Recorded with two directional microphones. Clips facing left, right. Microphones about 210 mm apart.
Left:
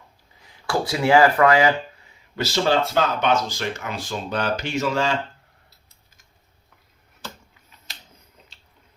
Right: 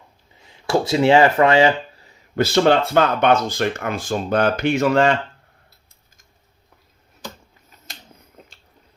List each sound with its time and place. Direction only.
0.3 s speech: 25° right (ahead or behind)
2.3 s speech: 55° right (ahead or behind)
8.4 s drip: 50° right (ahead or behind)